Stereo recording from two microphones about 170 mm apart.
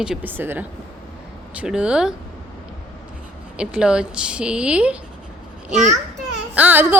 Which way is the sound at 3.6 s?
5° right (ahead or behind).